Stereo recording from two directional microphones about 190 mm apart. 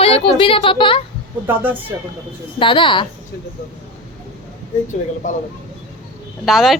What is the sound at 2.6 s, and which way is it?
Speech, 25° left (ahead or behind).